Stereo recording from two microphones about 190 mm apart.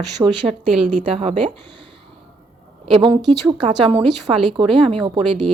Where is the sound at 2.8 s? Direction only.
25° right (ahead or behind).